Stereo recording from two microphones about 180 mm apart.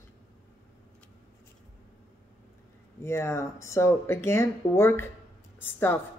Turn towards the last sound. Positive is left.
turn(degrees=10)  # may be behind; listen again after turning